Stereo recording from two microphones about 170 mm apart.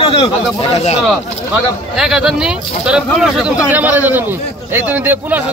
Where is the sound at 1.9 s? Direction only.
5° right (ahead or behind).